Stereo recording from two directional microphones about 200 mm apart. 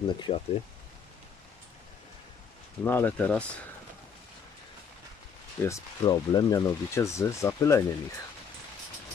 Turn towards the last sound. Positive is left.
turn(degrees=15)  # may be behind; listen again after turning